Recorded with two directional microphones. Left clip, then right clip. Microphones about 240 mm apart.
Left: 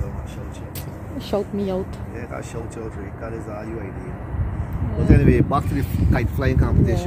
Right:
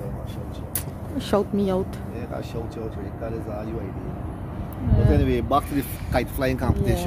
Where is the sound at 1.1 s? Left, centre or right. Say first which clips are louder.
Right 1 dB; centre.